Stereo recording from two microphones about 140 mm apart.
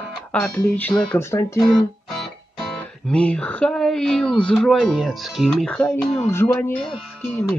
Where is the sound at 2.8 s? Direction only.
10° left (ahead or behind).